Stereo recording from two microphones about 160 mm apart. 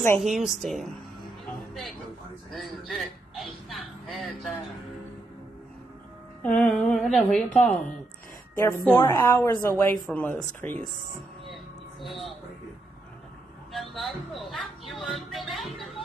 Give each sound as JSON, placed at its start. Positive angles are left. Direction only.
{"t": 0.2, "sound": "speech", "side_deg": 0}
{"t": 1.6, "sound": "music", "side_deg": 0}
{"t": 3.3, "sound": "speech", "side_deg": 0}
{"t": 6.4, "sound": "a woman's voice", "side_deg": 5}
{"t": 10.0, "sound": "a woman's voice", "side_deg": 5}
{"t": 11.4, "sound": "a sound", "side_deg": 0}
{"t": 13.7, "sound": "speech", "side_deg": 0}